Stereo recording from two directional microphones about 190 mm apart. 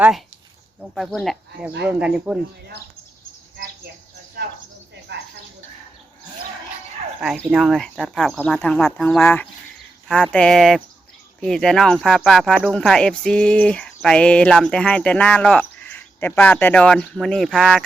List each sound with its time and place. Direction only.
0.8 s speech: centre (ahead or behind)
5.1 s a sound: 65° right (ahead or behind)
7.2 s speech: centre (ahead or behind)